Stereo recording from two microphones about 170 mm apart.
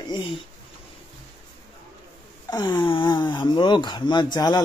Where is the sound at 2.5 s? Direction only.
25° left (ahead or behind).